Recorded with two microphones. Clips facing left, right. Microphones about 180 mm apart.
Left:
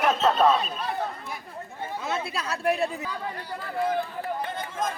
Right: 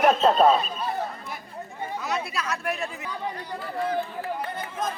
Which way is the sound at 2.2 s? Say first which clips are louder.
Left 3 dB; 30° left (ahead or behind).